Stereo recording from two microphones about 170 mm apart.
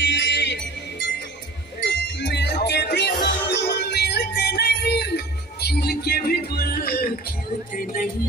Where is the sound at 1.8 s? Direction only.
85° left; by 7.0 s 60° left (ahead or behind).